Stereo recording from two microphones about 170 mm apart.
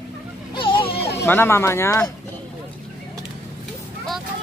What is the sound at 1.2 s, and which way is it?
Speech, 15° left (ahead or behind).